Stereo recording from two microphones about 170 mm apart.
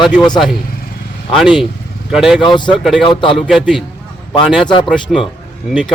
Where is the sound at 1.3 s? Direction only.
Centre (ahead or behind).